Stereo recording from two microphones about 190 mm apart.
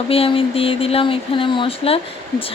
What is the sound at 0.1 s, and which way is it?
Speech, 30° left (ahead or behind).